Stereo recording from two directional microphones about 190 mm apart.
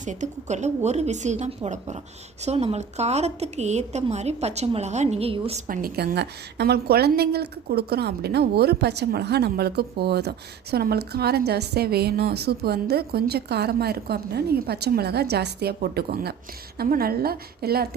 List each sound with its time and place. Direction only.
0.0 s a woman's voice: 40° right (ahead or behind)
5.6 s a woman's voice: 50° right (ahead or behind)